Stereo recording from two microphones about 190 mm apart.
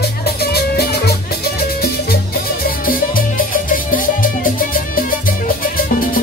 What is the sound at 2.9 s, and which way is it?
Music, 50° left (ahead or behind).